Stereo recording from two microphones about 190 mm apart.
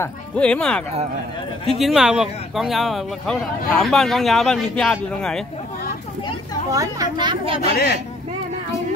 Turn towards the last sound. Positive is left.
turn(degrees=55)  # may be behind; listen again after turning